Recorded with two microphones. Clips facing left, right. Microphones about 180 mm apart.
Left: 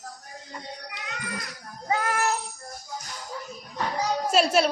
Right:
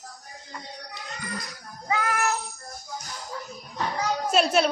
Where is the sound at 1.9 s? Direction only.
35° left (ahead or behind).